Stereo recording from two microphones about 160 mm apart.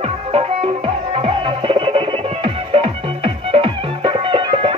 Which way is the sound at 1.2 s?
35° right (ahead or behind).